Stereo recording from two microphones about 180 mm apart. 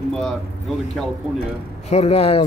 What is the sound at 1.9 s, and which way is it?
Speech, 35° left (ahead or behind).